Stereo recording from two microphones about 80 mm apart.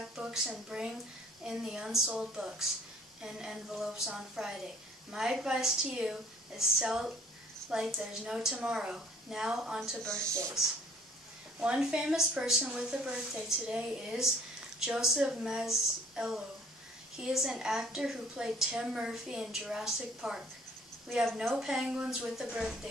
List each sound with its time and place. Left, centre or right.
0.0 s a woman's voice: centre
10.2 s speech: right
11.6 s a woman's voice: centre
21.5 s a woman's voice: centre